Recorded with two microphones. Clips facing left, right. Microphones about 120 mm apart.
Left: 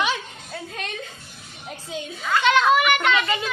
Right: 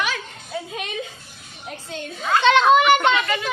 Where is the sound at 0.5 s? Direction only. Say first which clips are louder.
Right 4 dB; 5° right (ahead or behind).